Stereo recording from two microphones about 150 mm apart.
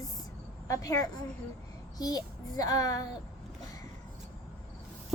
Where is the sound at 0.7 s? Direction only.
20° left (ahead or behind).